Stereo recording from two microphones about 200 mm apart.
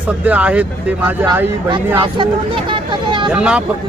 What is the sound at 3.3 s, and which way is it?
Speech, 5° right (ahead or behind).